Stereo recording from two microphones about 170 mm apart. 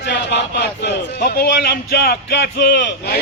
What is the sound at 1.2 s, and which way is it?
A man's voice, 65° left (ahead or behind).